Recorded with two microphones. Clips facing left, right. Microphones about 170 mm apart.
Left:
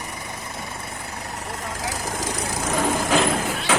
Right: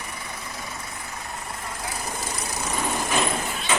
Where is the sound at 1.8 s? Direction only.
90° left.